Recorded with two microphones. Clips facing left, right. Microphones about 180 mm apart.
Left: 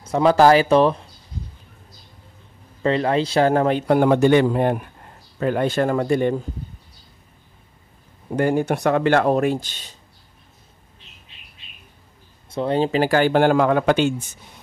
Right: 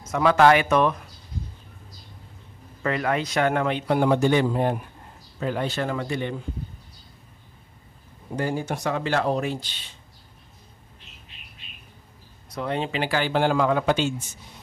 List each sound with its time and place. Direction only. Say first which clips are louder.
0.1 s speech: left 4 dB; 30° left (ahead or behind)
2.8 s speech: left 6 dB; 30° left (ahead or behind); by 4.8 s 65° left (ahead or behind)
5.4 s speech: left 7 dB; 55° left (ahead or behind)
8.4 s speech: left 8 dB; 60° left (ahead or behind)
12.4 s speech: left 7 dB; 30° left (ahead or behind); by 14.2 s 55° left (ahead or behind)